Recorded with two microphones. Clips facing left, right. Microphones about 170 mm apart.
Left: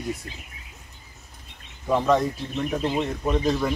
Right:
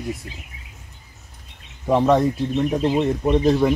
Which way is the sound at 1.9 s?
25° right (ahead or behind).